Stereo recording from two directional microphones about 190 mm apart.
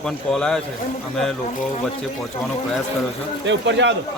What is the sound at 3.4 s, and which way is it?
Speech, 75° right (ahead or behind).